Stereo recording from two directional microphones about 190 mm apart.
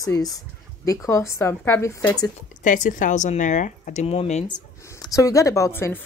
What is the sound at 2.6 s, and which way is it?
Speech, 40° left (ahead or behind).